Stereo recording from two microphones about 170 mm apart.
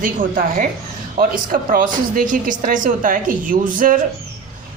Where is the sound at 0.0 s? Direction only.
55° right (ahead or behind).